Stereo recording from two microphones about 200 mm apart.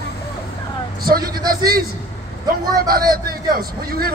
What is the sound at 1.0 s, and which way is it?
A man's voice, 50° right (ahead or behind).